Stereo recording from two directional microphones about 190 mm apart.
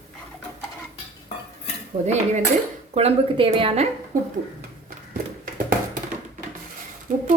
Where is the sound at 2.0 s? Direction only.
35° right (ahead or behind).